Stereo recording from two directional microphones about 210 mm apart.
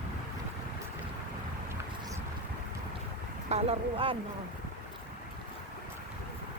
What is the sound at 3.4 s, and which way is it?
Speech, 30° right (ahead or behind).